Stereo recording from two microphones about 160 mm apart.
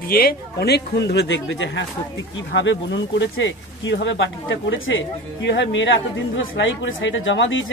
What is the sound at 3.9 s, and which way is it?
Speech, 90° left.